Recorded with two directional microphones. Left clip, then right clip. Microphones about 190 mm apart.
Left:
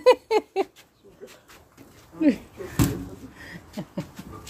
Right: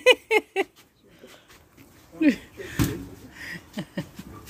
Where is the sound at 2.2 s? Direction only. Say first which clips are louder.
Even; 5° right (ahead or behind).